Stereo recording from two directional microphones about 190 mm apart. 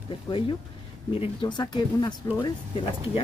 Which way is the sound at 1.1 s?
30° left (ahead or behind).